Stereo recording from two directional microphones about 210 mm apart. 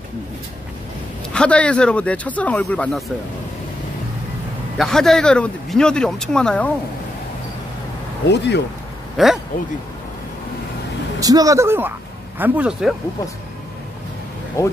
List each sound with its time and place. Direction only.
1.3 s speech: 5° left (ahead or behind)
4.7 s speech: centre (ahead or behind)
8.3 s speech: 55° left (ahead or behind)
9.1 s speech: centre (ahead or behind)
11.1 s speech: 15° right (ahead or behind)
14.6 s speech: 15° left (ahead or behind)